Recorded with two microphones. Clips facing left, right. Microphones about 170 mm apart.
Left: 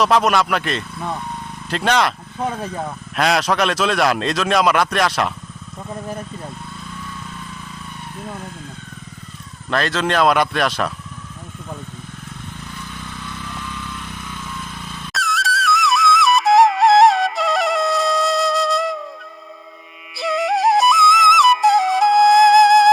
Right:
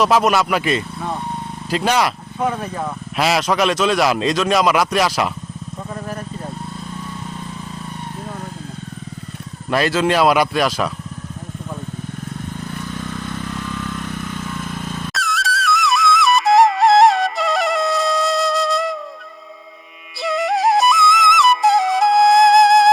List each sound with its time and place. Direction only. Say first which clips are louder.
0.0 s speech: right 1 dB; centre (ahead or behind)
3.2 s speech: even; 5° right (ahead or behind)
9.6 s speech: right 3 dB; 10° right (ahead or behind)
12.9 s vehicle: right 6 dB; 45° right (ahead or behind)
15.1 s flute: left 4 dB; centre (ahead or behind)
20.2 s music: even; centre (ahead or behind)